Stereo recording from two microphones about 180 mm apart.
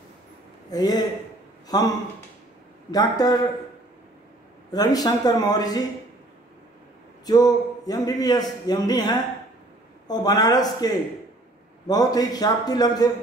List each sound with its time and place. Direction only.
0.7 s a man's voice: 20° left (ahead or behind)
2.9 s a man's voice: 20° left (ahead or behind)
4.7 s a man's voice: 20° left (ahead or behind)
7.2 s a man's voice: 20° left (ahead or behind)